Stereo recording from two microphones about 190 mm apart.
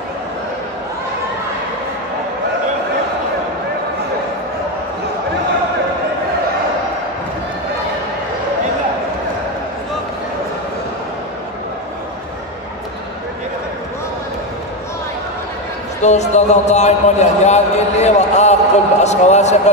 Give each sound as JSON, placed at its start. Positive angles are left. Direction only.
{"t": 16.0, "sound": "a man's voice", "side_deg": 35}